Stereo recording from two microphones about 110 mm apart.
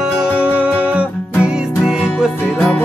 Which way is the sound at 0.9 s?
5° right (ahead or behind).